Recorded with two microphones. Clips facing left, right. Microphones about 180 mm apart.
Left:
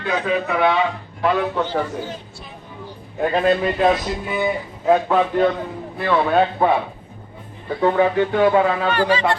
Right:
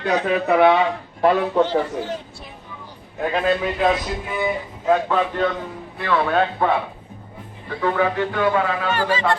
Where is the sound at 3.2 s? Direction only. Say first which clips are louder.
Left 3 dB; centre (ahead or behind).